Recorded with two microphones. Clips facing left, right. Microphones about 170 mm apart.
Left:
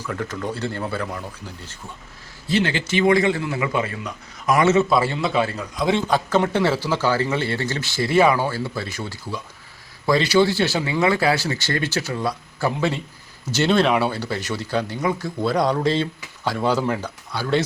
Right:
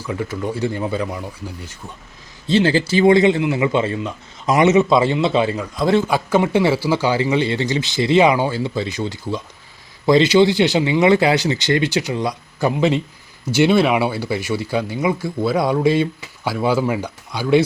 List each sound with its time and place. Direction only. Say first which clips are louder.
0.0 s speech: right 3 dB; 10° right (ahead or behind)
2.5 s a man's voice: right 6 dB; 30° right (ahead or behind); by 17.6 s 10° right (ahead or behind)